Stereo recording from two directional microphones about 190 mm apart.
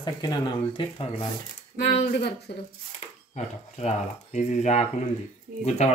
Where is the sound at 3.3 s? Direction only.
35° left (ahead or behind).